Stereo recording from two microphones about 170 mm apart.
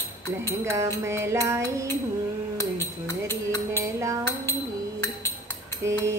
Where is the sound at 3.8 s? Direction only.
15° right (ahead or behind).